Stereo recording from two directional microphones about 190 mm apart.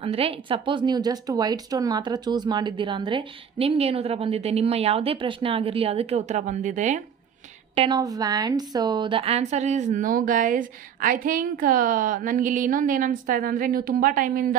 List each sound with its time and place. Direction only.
0.0 s speech: 30° right (ahead or behind)
7.7 s a woman's voice: 25° right (ahead or behind); by 14.5 s 45° right (ahead or behind)